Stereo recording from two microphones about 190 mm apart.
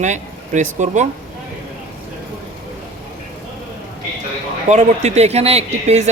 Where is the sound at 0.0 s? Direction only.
40° right (ahead or behind).